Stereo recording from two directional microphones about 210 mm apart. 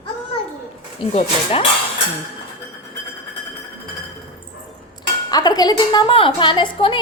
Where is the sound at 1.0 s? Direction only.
30° left (ahead or behind).